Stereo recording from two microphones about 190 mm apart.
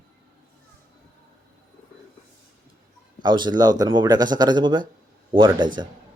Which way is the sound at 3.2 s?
25° right (ahead or behind).